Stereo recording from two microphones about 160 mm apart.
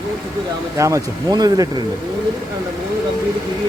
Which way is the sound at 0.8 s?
20° right (ahead or behind).